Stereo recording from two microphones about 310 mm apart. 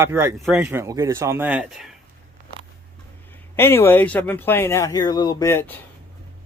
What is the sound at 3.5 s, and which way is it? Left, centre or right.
Speech, centre.